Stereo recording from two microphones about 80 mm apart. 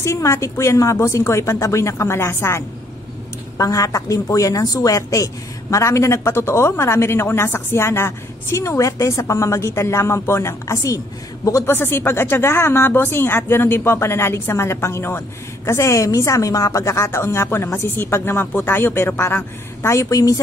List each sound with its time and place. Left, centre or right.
0.0 s a woman's voice: left
3.5 s a woman's voice: left
11.7 s a woman's voice: left